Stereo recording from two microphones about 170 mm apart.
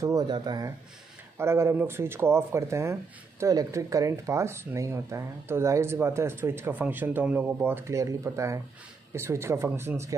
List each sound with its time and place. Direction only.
0.0 s speech: 20° right (ahead or behind)